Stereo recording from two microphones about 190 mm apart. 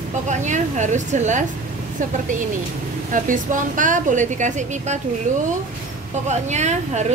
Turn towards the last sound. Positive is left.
turn(degrees=-35)  # may be behind; listen again after turning